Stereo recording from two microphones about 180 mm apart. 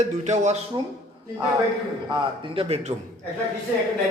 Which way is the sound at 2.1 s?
30° right (ahead or behind).